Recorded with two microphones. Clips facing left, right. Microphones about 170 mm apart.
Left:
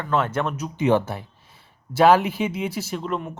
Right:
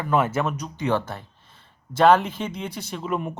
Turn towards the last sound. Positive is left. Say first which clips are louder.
# right 1 dB
turn(degrees=-10)  # may be behind; listen again after turning